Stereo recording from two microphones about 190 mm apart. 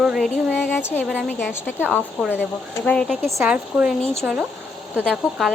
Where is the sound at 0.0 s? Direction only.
5° right (ahead or behind).